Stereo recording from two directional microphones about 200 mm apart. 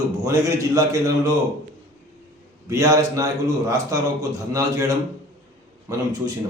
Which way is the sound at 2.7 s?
15° right (ahead or behind).